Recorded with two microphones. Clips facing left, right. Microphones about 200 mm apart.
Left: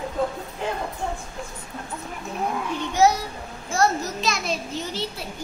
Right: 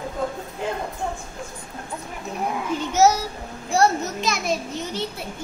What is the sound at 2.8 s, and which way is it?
Speech, 45° right (ahead or behind).